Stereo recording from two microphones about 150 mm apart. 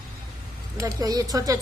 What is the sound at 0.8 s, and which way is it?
Speech, 20° right (ahead or behind).